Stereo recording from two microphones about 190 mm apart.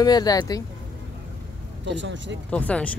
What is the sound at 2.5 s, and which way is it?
Speech, 5° left (ahead or behind).